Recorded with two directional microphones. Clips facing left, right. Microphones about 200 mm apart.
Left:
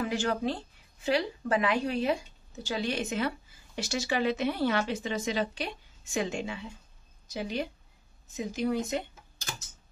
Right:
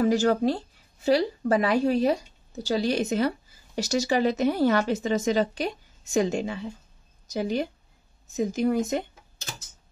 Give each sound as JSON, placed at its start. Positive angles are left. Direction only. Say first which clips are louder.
{"t": 0.0, "sound": "a woman's voice", "louder": "right 8 dB", "side_deg": -40}